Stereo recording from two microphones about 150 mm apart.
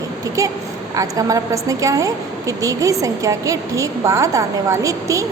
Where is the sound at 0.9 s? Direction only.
20° right (ahead or behind).